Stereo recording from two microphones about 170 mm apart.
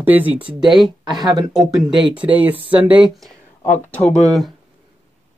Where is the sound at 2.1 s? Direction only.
10° right (ahead or behind).